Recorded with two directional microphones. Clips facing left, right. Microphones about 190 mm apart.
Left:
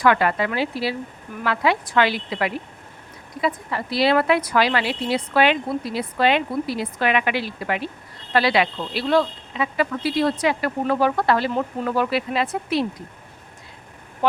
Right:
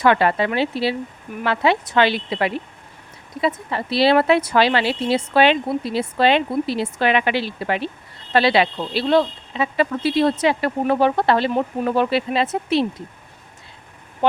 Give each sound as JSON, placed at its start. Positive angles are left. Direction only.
{"t": 0.0, "sound": "speech", "side_deg": -25}